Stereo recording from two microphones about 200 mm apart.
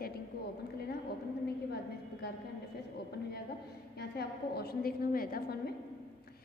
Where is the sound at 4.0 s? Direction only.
55° left (ahead or behind).